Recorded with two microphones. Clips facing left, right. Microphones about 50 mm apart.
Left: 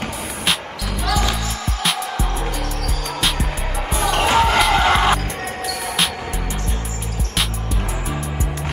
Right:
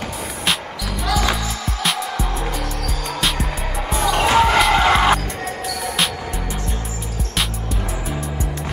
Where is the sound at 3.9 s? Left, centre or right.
Centre.